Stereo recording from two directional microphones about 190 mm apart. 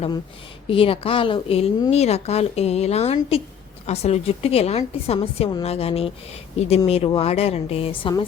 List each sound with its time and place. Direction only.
0.7 s a woman's voice: 30° left (ahead or behind)